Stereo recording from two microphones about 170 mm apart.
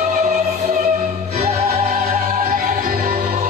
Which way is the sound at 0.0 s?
45° right (ahead or behind).